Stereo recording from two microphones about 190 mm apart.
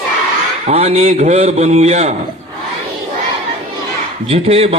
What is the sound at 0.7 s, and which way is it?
A man's voice, 35° right (ahead or behind).